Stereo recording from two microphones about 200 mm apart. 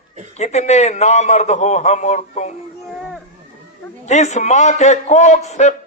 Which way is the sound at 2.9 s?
Centre (ahead or behind).